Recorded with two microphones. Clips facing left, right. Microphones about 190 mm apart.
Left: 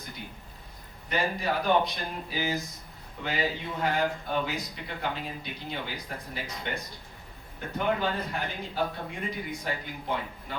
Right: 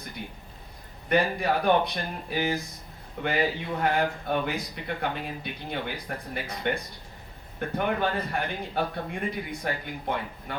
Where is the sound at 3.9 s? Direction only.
55° right (ahead or behind).